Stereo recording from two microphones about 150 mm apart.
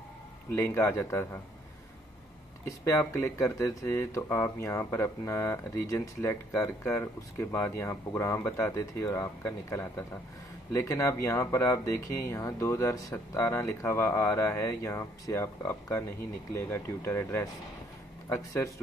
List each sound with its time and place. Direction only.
0.6 s speech: 15° left (ahead or behind)
2.8 s speech: 20° left (ahead or behind)